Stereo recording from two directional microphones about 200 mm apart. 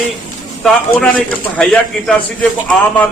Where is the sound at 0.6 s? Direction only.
5° left (ahead or behind).